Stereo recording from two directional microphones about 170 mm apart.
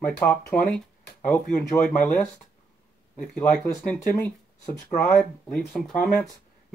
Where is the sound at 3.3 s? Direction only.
5° left (ahead or behind).